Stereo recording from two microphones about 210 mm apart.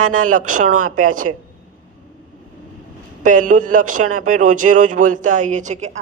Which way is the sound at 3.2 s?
40° right (ahead or behind).